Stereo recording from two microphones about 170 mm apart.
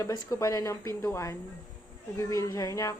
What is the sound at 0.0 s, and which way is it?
A woman's voice, 20° left (ahead or behind).